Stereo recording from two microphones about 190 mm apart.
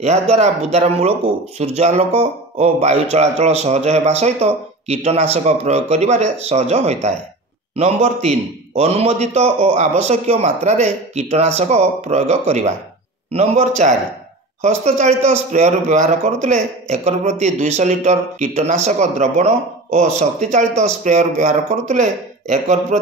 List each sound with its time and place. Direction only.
0.0 s a man's voice: 35° right (ahead or behind)